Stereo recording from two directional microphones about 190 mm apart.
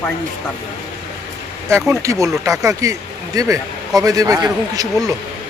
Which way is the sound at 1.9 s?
15° right (ahead or behind).